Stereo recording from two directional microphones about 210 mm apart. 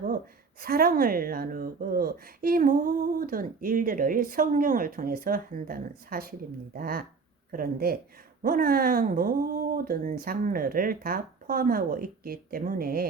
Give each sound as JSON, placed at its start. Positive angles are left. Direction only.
{"t": 0.6, "sound": "a woman's voice", "side_deg": -45}